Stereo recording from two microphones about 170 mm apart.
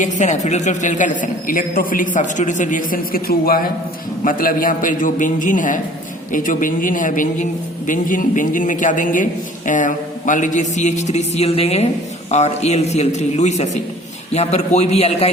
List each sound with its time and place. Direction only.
0.0 s a woman's voice: 45° left (ahead or behind)